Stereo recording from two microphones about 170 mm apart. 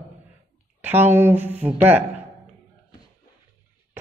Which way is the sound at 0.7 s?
10° right (ahead or behind).